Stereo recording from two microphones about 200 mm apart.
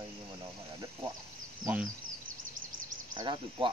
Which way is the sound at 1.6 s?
10° right (ahead or behind).